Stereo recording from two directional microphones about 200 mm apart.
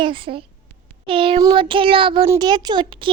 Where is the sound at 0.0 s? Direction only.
25° right (ahead or behind).